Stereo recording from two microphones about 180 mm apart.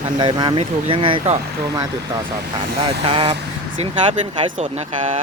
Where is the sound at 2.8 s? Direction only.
30° right (ahead or behind).